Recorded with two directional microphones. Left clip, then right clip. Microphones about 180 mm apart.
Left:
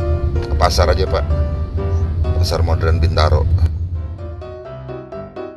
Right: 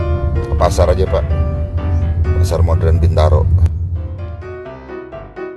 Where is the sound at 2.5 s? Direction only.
15° right (ahead or behind).